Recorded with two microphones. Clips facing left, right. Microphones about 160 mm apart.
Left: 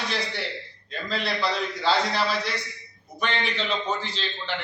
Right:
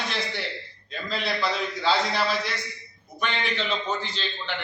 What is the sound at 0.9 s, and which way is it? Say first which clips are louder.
A man's voice: even; centre (ahead or behind).